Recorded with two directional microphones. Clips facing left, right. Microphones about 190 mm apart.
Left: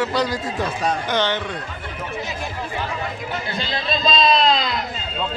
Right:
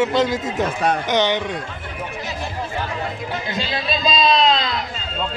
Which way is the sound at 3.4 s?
15° right (ahead or behind).